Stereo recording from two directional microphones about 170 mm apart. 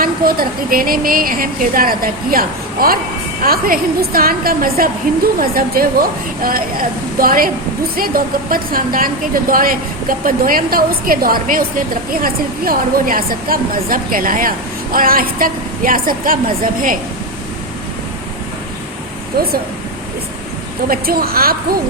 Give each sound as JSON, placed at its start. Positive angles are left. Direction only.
{"t": 0.0, "sound": "a woman's voice", "side_deg": -60}
{"t": 19.3, "sound": "a woman's voice", "side_deg": -60}
{"t": 20.8, "sound": "a woman's voice", "side_deg": -60}